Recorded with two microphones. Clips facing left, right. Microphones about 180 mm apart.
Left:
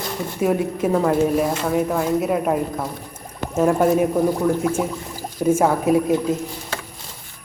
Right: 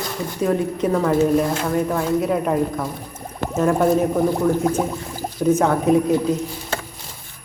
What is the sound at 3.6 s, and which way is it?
Speech, 10° left (ahead or behind).